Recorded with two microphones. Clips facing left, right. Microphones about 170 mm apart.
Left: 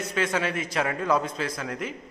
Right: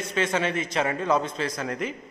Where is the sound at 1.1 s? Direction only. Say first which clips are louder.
Even; 25° right (ahead or behind).